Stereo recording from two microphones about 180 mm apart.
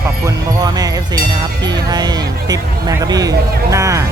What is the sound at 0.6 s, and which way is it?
Music, 20° right (ahead or behind).